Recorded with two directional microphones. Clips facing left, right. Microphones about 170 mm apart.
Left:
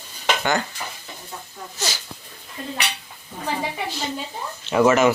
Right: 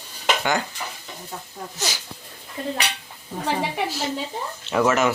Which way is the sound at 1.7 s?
15° right (ahead or behind).